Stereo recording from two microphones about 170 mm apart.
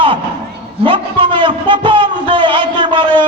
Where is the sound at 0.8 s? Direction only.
30° right (ahead or behind).